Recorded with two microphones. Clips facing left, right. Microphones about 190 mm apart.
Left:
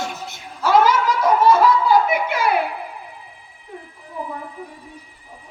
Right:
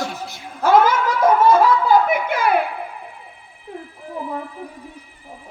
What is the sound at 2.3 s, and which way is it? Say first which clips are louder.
Speech: right 2 dB; 50° right (ahead or behind).